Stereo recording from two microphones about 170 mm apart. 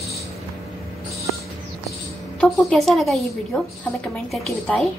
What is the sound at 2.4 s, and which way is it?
A woman's voice, centre (ahead or behind).